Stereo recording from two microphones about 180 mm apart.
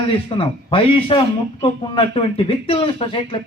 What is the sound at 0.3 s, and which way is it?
A man's voice, 30° left (ahead or behind).